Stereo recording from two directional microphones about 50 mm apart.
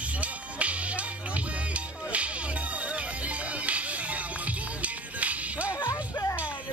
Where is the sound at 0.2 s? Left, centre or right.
Right.